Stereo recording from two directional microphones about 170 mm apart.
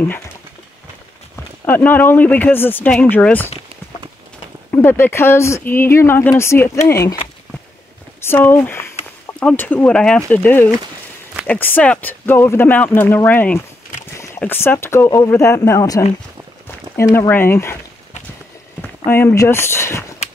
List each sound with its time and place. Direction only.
1.7 s speech: 10° left (ahead or behind)
4.6 s speech: 15° left (ahead or behind)
8.2 s speech: 15° left (ahead or behind)
18.8 s walk: 10° left (ahead or behind)